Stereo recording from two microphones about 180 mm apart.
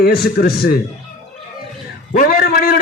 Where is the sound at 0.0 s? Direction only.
60° left (ahead or behind).